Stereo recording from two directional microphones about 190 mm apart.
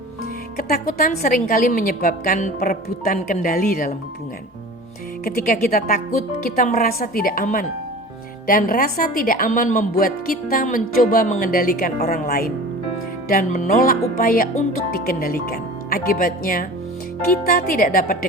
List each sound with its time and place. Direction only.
0.5 s a woman's voice: 50° left (ahead or behind)
5.2 s a woman's voice: 50° left (ahead or behind)